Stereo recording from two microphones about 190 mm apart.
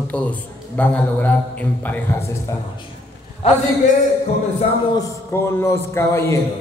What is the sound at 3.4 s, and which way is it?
Speech, 30° left (ahead or behind).